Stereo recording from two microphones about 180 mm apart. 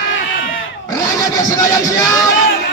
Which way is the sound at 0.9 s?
20° left (ahead or behind).